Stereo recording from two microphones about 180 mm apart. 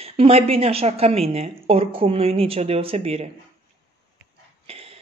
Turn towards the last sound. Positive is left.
turn(degrees=-35)  # may be behind; listen again after turning